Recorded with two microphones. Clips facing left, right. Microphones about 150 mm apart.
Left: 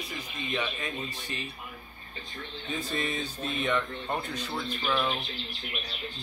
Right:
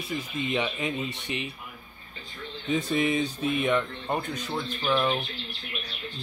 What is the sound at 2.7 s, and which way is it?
Speech, 15° right (ahead or behind).